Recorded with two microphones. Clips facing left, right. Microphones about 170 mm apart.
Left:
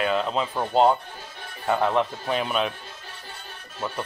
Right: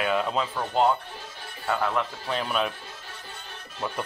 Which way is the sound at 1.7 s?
25° left (ahead or behind).